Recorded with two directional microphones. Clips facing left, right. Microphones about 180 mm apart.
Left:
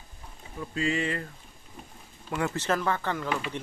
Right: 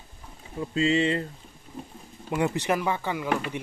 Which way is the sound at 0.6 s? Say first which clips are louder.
Right 5 dB; 25° right (ahead or behind).